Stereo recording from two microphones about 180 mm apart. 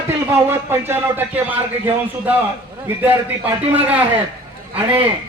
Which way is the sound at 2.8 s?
10° right (ahead or behind).